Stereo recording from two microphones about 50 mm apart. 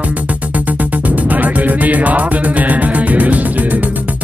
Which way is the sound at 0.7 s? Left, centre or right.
Right.